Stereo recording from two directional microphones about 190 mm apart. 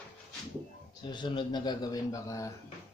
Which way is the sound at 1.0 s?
25° left (ahead or behind).